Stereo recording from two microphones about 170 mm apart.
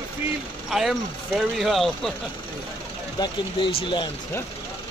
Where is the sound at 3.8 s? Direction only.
30° left (ahead or behind).